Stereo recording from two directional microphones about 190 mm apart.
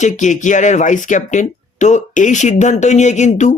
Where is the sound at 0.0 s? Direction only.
40° left (ahead or behind).